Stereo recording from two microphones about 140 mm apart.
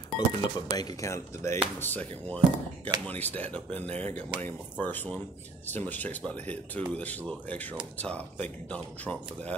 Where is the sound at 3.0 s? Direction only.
10° left (ahead or behind).